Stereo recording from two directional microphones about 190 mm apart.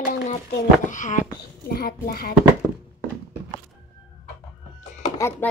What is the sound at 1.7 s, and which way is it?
Speech, 50° left (ahead or behind).